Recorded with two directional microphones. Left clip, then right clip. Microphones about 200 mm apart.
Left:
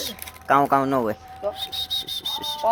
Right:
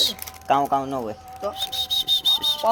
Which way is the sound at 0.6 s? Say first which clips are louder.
Left 3 dB; 25° left (ahead or behind).